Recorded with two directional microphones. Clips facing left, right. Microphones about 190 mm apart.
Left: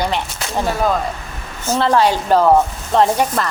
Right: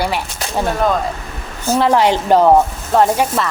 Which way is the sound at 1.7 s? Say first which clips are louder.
Right 2 dB; 15° right (ahead or behind).